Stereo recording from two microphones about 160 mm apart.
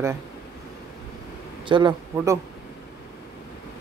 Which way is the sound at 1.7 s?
30° right (ahead or behind).